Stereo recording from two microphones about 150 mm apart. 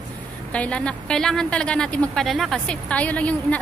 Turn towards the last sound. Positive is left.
turn(degrees=10)  # may be behind; listen again after turning